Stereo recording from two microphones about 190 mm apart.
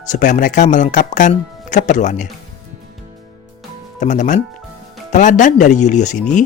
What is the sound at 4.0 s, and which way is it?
Speech, 40° left (ahead or behind).